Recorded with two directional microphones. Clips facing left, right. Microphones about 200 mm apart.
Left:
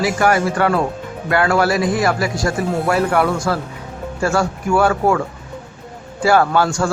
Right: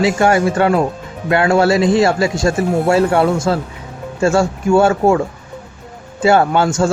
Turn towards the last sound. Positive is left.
turn(degrees=-25)  # may be behind; listen again after turning